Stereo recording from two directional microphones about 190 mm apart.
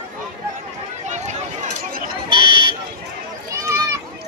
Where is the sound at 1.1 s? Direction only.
35° right (ahead or behind).